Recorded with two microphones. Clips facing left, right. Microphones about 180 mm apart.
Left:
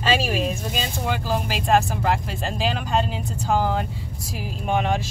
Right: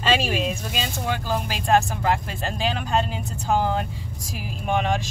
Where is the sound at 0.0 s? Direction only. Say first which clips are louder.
Even; 5° left (ahead or behind).